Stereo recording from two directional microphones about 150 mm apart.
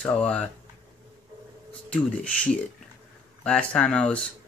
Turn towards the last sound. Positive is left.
turn(degrees=10)  # may be behind; listen again after turning